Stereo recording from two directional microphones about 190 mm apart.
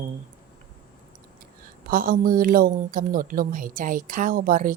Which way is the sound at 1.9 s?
45° right (ahead or behind).